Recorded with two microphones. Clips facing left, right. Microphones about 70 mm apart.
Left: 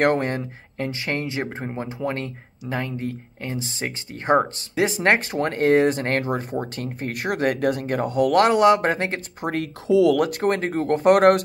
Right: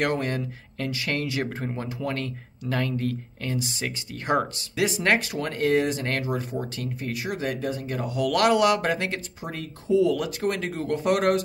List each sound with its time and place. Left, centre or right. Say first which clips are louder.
0.0 s speech: left 5 dB; left
9.4 s speech: left 8 dB; left
10.1 s speech: left 6 dB; left